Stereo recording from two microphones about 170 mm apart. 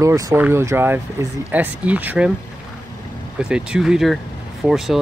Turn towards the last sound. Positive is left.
turn(degrees=0)  # may be behind; listen again after turning